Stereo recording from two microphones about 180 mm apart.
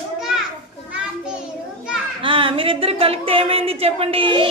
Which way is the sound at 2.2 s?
30° right (ahead or behind).